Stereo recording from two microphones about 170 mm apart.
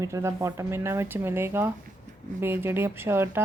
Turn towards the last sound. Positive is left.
turn(degrees=-15)  # may be behind; listen again after turning